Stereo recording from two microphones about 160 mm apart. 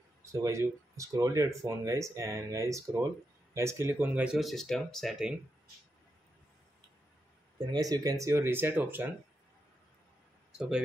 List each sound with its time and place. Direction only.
0.2 s speech: 20° right (ahead or behind); by 5.3 s centre (ahead or behind)
7.7 s speech: 25° right (ahead or behind)